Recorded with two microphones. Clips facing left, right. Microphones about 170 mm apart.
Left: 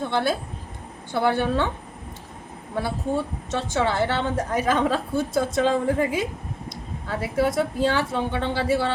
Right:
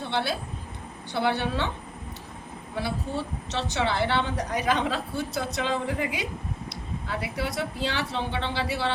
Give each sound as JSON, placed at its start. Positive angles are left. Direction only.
{"t": 0.0, "sound": "a woman's voice", "side_deg": 45}
{"t": 2.7, "sound": "a woman's voice", "side_deg": 50}